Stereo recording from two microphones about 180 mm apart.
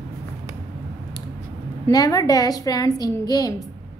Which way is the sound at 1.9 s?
20° left (ahead or behind).